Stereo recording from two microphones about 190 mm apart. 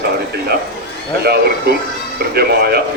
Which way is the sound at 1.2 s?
55° right (ahead or behind).